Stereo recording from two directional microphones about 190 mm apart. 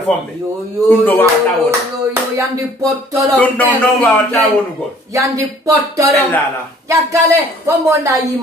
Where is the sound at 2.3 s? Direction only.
15° right (ahead or behind).